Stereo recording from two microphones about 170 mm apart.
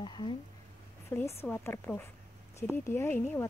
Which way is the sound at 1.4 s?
10° left (ahead or behind).